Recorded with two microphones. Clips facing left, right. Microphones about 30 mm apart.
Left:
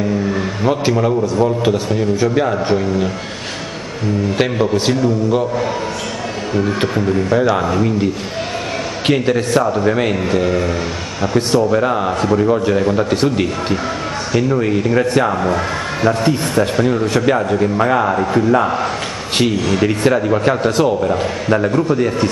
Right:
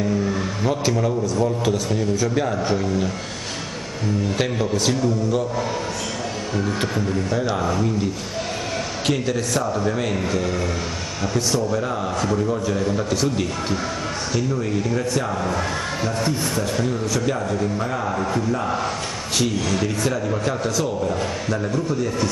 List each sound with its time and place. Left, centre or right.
0.3 s a man's voice: left
4.4 s a man's voice: left
19.3 s a man's voice: left